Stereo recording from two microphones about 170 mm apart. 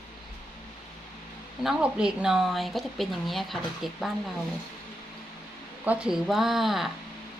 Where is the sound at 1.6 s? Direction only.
5° right (ahead or behind).